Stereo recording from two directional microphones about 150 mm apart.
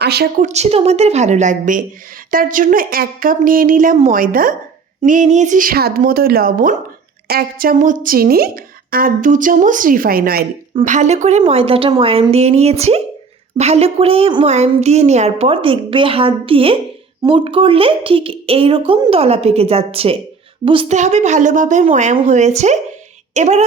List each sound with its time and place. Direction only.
0.0 s speech: 90° right
0.4 s a woman's voice: 45° right (ahead or behind); by 4.5 s 70° right (ahead or behind)
5.0 s speech: 55° right (ahead or behind)
7.3 s speech: 85° right
10.8 s a woman's voice: 55° right (ahead or behind); by 19.1 s 30° right (ahead or behind)
19.1 s a woman's voice: 45° right (ahead or behind)
20.8 s a woman's voice: 50° right (ahead or behind)